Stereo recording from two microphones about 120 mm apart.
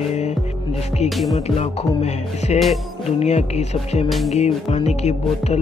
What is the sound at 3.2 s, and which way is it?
Speech, 65° left (ahead or behind).